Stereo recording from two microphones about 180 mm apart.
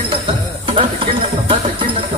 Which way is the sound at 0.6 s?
30° right (ahead or behind).